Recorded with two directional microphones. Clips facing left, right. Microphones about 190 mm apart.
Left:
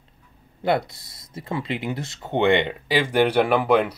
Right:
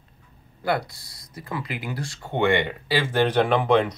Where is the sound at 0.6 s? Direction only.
25° left (ahead or behind).